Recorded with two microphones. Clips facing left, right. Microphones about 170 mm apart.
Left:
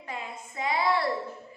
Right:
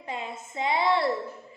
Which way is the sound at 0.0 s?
25° right (ahead or behind).